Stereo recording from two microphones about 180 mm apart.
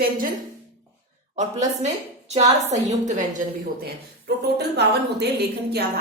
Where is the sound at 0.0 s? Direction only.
50° right (ahead or behind).